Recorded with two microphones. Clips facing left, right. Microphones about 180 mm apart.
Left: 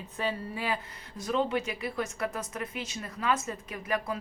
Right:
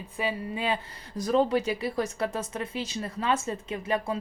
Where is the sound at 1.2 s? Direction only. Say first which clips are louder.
Right 5 dB; 40° right (ahead or behind).